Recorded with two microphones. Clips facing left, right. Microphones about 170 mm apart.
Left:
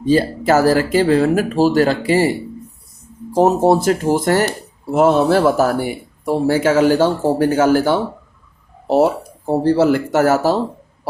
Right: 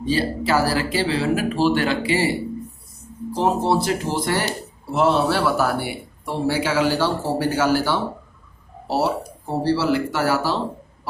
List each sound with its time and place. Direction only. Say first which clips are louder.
0.0 s speech: left 6 dB; 45° left (ahead or behind)
3.3 s speech: left 7 dB; 45° left (ahead or behind)
9.5 s speech: left 6 dB; 50° left (ahead or behind)